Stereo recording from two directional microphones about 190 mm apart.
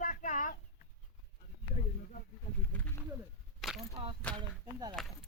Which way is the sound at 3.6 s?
Centre (ahead or behind).